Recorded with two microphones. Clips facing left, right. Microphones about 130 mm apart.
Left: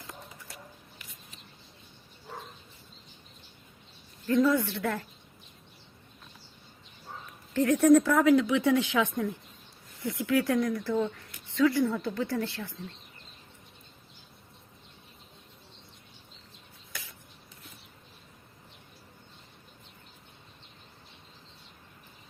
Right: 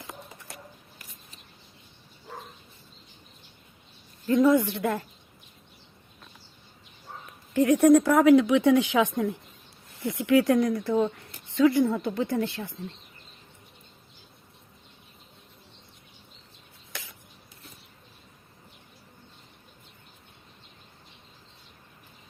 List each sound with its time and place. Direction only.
4.3 s speech: 15° right (ahead or behind)
7.5 s a woman's voice: 15° right (ahead or behind)